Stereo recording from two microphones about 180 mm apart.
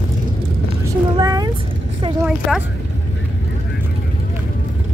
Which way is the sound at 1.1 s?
20° right (ahead or behind).